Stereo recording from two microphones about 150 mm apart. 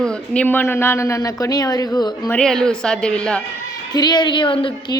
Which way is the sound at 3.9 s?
30° left (ahead or behind).